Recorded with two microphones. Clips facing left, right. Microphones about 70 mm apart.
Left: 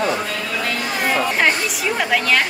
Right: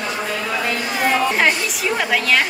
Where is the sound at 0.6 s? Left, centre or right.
Centre.